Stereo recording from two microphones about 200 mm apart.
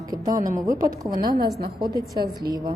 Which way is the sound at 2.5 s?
50° right (ahead or behind).